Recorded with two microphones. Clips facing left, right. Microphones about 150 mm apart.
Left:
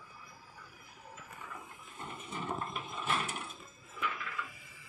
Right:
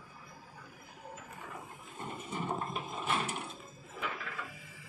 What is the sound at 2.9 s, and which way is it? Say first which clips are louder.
Ratchet: right 1 dB; 30° right (ahead or behind).